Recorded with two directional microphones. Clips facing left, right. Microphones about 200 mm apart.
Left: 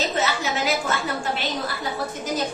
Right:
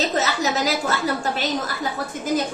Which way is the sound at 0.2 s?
40° right (ahead or behind).